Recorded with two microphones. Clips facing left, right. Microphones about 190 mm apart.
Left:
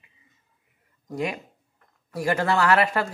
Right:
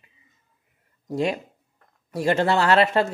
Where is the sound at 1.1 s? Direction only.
30° right (ahead or behind).